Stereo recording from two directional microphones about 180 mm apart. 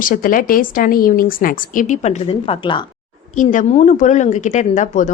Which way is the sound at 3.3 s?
40° left (ahead or behind).